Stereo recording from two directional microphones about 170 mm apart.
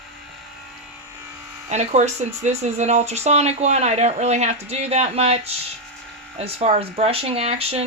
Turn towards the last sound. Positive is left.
turn(degrees=-40)  # may be behind; listen again after turning